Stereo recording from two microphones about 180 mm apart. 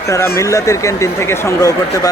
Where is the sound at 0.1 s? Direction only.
15° left (ahead or behind).